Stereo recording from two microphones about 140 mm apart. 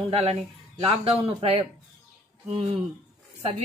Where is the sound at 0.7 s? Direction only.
40° right (ahead or behind).